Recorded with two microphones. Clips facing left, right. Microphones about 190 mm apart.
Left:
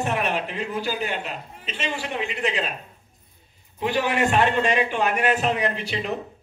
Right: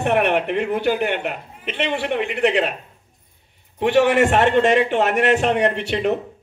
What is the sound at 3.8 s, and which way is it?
A man's voice, 75° right (ahead or behind).